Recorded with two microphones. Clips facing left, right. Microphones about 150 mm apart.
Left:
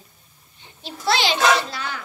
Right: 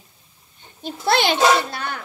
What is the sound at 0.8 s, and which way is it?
A child's voice, 50° right (ahead or behind).